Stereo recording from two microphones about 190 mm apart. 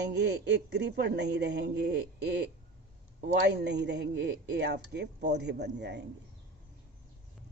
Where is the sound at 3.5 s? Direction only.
65° right (ahead or behind).